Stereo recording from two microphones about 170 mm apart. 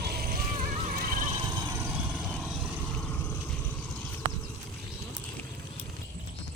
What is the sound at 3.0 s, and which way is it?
Vehicle, 10° left (ahead or behind).